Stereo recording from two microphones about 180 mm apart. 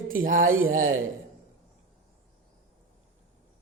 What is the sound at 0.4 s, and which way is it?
Speech, 90° right.